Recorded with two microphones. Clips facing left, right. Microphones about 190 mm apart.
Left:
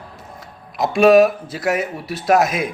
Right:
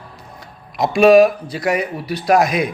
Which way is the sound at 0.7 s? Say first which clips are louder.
Right 1 dB; centre (ahead or behind).